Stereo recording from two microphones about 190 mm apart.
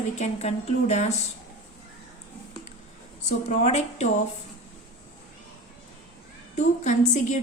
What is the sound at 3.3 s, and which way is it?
Speech, 35° left (ahead or behind).